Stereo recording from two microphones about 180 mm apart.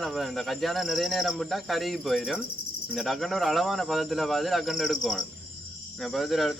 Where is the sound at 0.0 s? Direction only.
Centre (ahead or behind).